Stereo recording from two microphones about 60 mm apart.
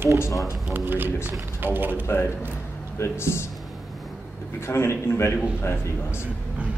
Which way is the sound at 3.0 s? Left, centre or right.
Left.